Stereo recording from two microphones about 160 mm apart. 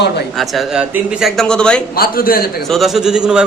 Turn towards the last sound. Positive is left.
turn(degrees=-5)  # may be behind; listen again after turning